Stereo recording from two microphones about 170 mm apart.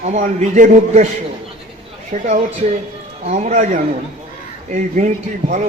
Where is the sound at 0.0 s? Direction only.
45° right (ahead or behind).